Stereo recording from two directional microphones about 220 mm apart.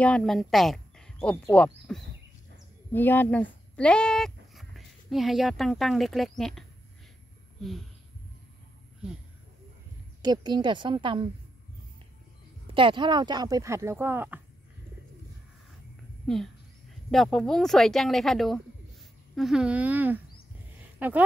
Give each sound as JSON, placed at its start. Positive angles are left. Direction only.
{"t": 0.0, "sound": "speech", "side_deg": 5}
{"t": 10.2, "sound": "a woman's voice", "side_deg": -20}
{"t": 12.6, "sound": "speech", "side_deg": -25}
{"t": 17.1, "sound": "speech", "side_deg": 0}